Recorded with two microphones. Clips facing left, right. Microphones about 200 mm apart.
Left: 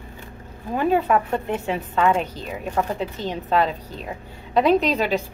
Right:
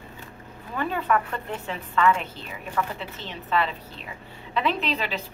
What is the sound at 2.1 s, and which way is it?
Speech, 40° left (ahead or behind).